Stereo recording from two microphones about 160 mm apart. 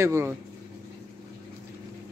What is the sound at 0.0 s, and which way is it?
Speech, 15° right (ahead or behind).